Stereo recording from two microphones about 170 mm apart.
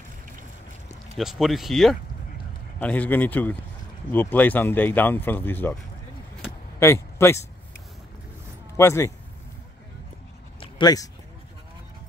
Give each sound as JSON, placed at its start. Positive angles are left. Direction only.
{"t": 1.1, "sound": "speech", "side_deg": 0}
{"t": 6.8, "sound": "speech", "side_deg": 15}
{"t": 8.7, "sound": "speech", "side_deg": 15}
{"t": 10.6, "sound": "a sound", "side_deg": 25}